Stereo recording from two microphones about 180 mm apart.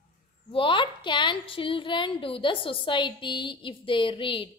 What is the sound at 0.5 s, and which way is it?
A woman's voice, 30° left (ahead or behind).